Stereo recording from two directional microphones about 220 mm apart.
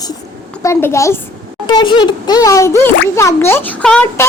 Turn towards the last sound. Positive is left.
turn(degrees=5)  # may be behind; listen again after turning